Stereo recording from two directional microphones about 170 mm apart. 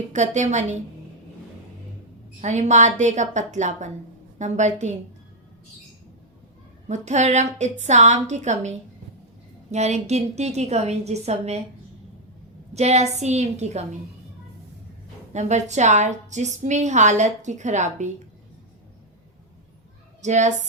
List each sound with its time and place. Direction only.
0.1 s a woman's voice: 45° right (ahead or behind)
2.4 s a woman's voice: 45° right (ahead or behind)
6.8 s a woman's voice: 45° right (ahead or behind)
12.7 s a woman's voice: 40° right (ahead or behind)
15.3 s a woman's voice: 45° right (ahead or behind)
20.2 s a woman's voice: 45° right (ahead or behind)